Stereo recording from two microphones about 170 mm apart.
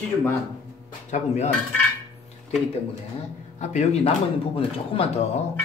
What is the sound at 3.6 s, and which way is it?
Speech, 40° left (ahead or behind).